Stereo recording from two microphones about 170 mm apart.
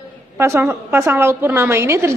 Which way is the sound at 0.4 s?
15° right (ahead or behind).